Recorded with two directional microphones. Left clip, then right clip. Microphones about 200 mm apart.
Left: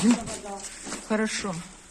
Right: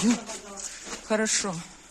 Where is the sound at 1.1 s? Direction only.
40° right (ahead or behind).